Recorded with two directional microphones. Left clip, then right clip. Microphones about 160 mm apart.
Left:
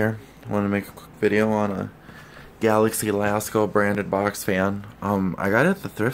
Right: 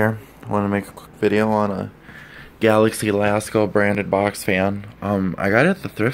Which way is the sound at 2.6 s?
5° right (ahead or behind).